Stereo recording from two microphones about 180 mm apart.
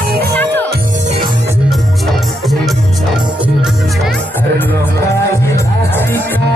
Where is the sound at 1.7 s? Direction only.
Centre (ahead or behind).